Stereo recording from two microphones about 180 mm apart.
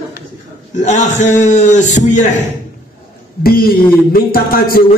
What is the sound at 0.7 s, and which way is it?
A man's voice, 45° left (ahead or behind).